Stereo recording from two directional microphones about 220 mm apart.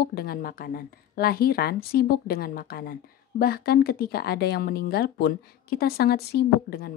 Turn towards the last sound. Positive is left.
turn(degrees=45)  # may be behind; listen again after turning